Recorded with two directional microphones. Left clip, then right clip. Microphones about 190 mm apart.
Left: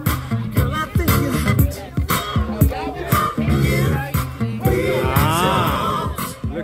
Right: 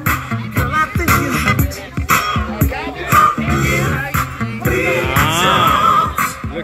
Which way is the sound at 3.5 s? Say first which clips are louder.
Right 5 dB; 45° left (ahead or behind).